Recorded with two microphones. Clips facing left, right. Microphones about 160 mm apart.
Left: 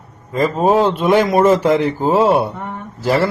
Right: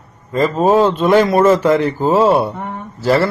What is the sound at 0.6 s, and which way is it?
A man's voice, 15° left (ahead or behind).